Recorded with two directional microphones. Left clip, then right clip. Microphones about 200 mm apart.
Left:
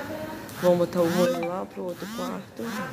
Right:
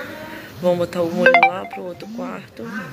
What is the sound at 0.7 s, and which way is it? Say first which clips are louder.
Speech: right 3 dB; 10° left (ahead or behind).